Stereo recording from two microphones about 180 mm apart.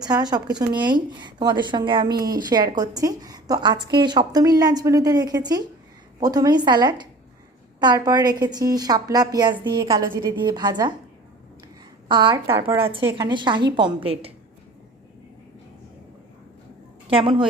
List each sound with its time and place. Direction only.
0.0 s speech: 20° right (ahead or behind)
12.0 s speech: 25° right (ahead or behind)
12.5 s speech: 15° right (ahead or behind)
12.9 s a woman's voice: 30° right (ahead or behind)
17.1 s speech: 30° right (ahead or behind)